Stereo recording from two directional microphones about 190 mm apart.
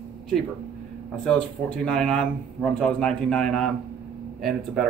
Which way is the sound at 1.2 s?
5° left (ahead or behind).